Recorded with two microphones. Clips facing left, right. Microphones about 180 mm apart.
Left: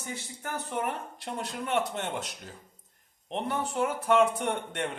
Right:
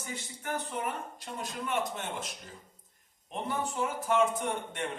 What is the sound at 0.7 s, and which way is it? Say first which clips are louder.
Speech: left 3 dB; 65° left (ahead or behind).